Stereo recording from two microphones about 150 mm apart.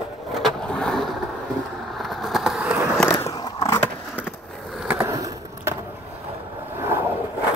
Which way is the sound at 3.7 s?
10° left (ahead or behind).